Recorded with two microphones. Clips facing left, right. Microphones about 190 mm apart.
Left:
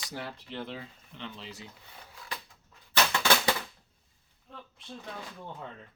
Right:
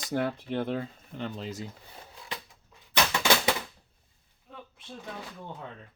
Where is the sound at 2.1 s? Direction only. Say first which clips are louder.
Right 1 dB; 20° right (ahead or behind).